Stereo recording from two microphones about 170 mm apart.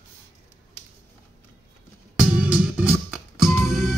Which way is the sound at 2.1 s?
5° right (ahead or behind).